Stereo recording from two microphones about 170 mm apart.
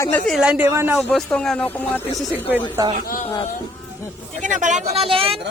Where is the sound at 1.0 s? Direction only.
Centre (ahead or behind).